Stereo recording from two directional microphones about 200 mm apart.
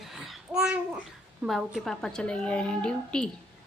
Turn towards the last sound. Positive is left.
turn(degrees=5)  # may be behind; listen again after turning